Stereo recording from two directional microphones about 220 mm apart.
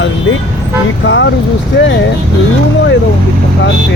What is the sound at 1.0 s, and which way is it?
Speech, 55° left (ahead or behind).